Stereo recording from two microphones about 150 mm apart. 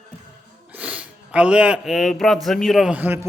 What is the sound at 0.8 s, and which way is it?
A man's voice, 10° right (ahead or behind).